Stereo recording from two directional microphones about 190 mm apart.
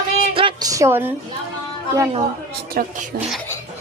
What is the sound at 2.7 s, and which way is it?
Speech, 45° right (ahead or behind).